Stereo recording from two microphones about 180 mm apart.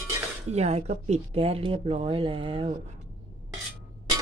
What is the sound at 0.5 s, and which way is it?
Speech, 35° right (ahead or behind).